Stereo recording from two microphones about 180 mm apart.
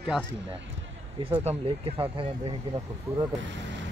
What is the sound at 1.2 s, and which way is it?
Speech, 30° right (ahead or behind).